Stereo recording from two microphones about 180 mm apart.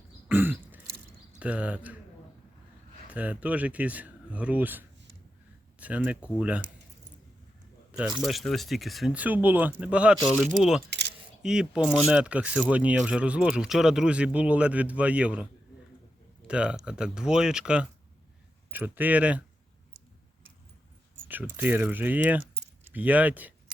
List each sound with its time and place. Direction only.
0.3 s throat clearing: 10° right (ahead or behind)
1.4 s speech: 5° right (ahead or behind)
3.1 s speech: 10° right (ahead or behind)
5.8 s a sound: 10° right (ahead or behind)
6.2 s speech: 5° right (ahead or behind)
8.2 s speech: centre (ahead or behind)
10.8 s a sound: 70° right (ahead or behind)
11.4 s speech: 5° right (ahead or behind)
16.5 s speech: 5° right (ahead or behind)
21.2 s speech: 10° right (ahead or behind)